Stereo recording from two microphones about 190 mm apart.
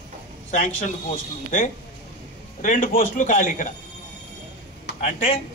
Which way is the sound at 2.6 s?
45° left (ahead or behind).